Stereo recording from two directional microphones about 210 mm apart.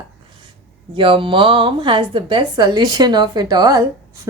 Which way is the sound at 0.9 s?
25° right (ahead or behind).